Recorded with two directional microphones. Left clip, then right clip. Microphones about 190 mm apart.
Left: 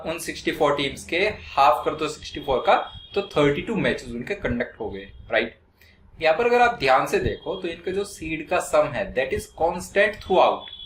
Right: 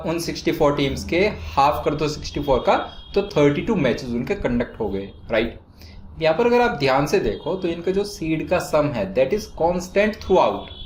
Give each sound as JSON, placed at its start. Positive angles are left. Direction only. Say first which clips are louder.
{"t": 0.0, "sound": "speech", "louder": "right 4 dB", "side_deg": -45}